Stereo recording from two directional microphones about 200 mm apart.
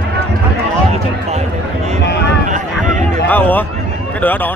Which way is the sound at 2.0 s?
55° left (ahead or behind).